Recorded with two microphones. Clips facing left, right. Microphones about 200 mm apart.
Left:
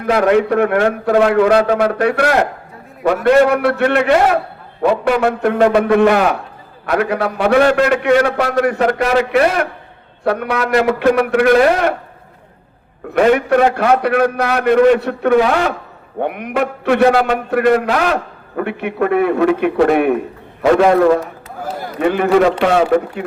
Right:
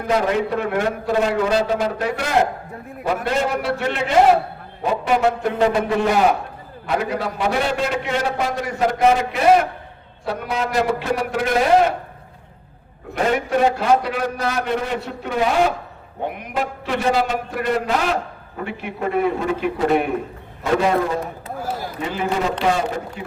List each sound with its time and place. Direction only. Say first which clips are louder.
0.0 s a man's voice: left 6 dB; 65° left (ahead or behind)
13.1 s a man's voice: left 7 dB; 60° left (ahead or behind)
16.2 s a man's voice: left 6 dB; 60° left (ahead or behind)
20.6 s a man's voice: left 8 dB; 70° left (ahead or behind)
21.6 s a man's voice: left 9 dB; 60° left (ahead or behind)